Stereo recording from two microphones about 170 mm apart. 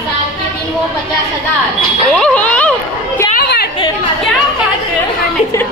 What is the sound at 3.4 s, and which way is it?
Chatter, 65° left (ahead or behind).